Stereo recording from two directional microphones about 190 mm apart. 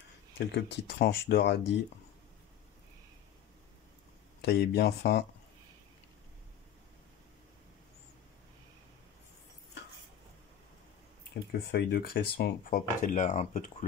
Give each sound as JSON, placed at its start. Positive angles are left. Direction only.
{"t": 0.5, "sound": "speech", "side_deg": 60}
{"t": 4.4, "sound": "speech", "side_deg": 55}
{"t": 11.7, "sound": "speech", "side_deg": 55}